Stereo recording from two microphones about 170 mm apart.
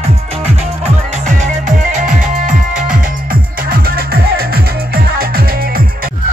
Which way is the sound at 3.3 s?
60° right (ahead or behind).